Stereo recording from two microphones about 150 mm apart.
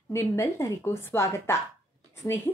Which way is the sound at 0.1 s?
20° left (ahead or behind).